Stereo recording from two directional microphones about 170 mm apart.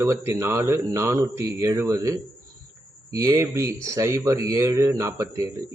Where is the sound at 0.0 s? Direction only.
15° right (ahead or behind).